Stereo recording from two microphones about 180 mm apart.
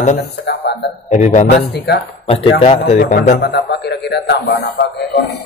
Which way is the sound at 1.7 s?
65° left (ahead or behind).